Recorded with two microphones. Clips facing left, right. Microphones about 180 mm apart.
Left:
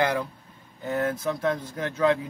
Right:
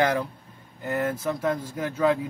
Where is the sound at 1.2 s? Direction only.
5° right (ahead or behind).